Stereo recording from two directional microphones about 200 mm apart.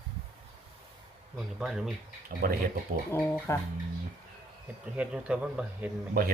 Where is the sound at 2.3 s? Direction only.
45° right (ahead or behind).